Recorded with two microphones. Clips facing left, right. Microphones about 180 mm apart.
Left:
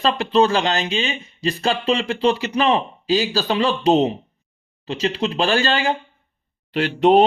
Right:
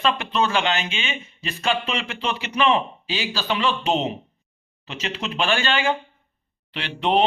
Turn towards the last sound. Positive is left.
turn(degrees=45)  # may be behind; listen again after turning